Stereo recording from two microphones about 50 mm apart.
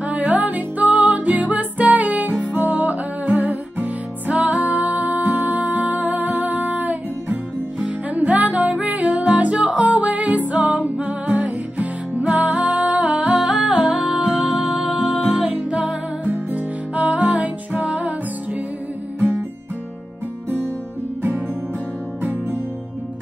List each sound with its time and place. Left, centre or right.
0.1 s music: right
13.1 s music: centre
13.5 s music: centre
13.9 s music: centre
14.2 s music: centre
16.3 s music: right